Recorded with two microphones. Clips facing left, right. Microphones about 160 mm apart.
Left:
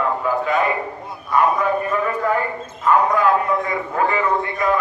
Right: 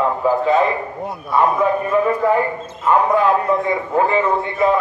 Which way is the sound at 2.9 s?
30° right (ahead or behind).